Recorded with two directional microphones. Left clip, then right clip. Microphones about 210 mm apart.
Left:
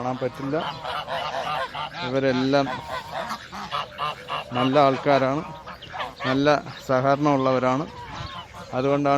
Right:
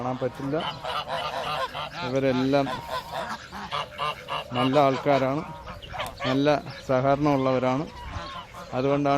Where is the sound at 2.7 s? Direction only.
25° right (ahead or behind).